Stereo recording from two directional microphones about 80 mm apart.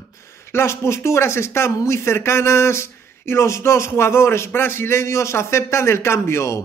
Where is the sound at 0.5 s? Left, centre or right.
Left.